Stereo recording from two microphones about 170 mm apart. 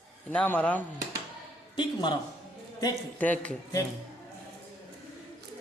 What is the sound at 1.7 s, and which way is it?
Speech, 25° left (ahead or behind).